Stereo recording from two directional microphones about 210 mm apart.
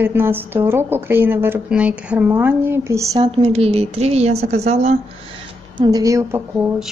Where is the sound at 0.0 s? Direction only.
10° right (ahead or behind).